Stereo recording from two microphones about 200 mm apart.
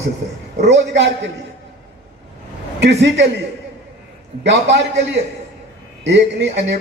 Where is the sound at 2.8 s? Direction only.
60° right (ahead or behind).